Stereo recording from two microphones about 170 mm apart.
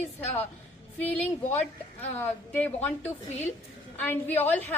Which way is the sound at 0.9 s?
10° left (ahead or behind).